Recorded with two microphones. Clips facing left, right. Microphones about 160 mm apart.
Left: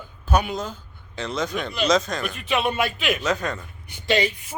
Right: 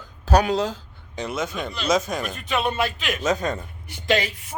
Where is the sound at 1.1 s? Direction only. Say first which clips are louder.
Left 1 dB; 10° right (ahead or behind).